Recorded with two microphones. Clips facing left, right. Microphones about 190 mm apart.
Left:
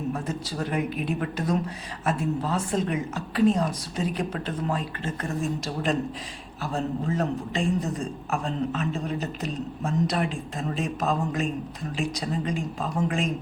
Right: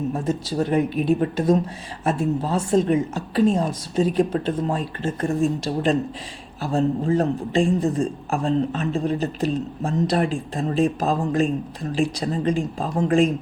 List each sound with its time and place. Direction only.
0.1 s a man's voice: 25° right (ahead or behind)